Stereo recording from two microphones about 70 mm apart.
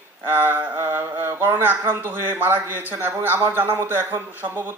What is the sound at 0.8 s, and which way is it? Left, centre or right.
Music, right.